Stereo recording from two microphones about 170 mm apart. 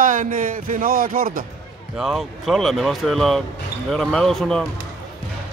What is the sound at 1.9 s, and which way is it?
Speech, centre (ahead or behind).